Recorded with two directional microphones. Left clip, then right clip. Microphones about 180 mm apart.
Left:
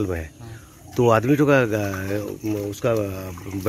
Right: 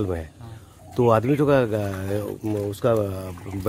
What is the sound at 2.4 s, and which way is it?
Speech, 35° right (ahead or behind).